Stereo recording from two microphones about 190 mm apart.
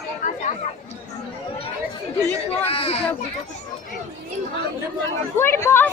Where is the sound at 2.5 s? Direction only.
30° left (ahead or behind).